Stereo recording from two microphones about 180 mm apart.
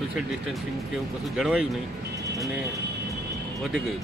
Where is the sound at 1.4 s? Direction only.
5° right (ahead or behind).